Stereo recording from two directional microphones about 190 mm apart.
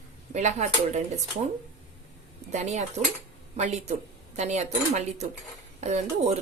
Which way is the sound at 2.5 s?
35° right (ahead or behind).